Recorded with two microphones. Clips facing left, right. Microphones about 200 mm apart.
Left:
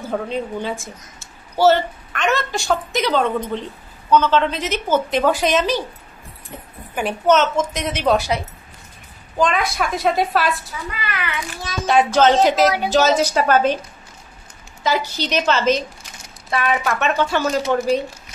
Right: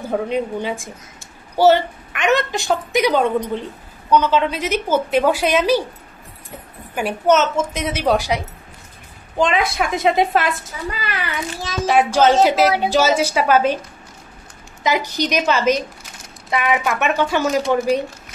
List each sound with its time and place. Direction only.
0.1 s a woman's voice: 15° right (ahead or behind)
7.0 s a woman's voice: 10° right (ahead or behind)
9.4 s a woman's voice: 25° right (ahead or behind)
11.1 s a child's voice: 30° right (ahead or behind)
11.9 s a woman's voice: 10° right (ahead or behind)
14.8 s a woman's voice: 15° right (ahead or behind)